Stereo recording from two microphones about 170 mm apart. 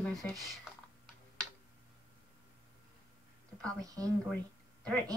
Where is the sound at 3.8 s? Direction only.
20° right (ahead or behind).